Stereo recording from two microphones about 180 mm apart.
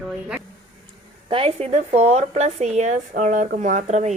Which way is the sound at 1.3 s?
30° right (ahead or behind).